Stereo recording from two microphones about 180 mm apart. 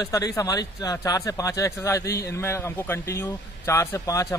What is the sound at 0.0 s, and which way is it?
Speech, 20° left (ahead or behind).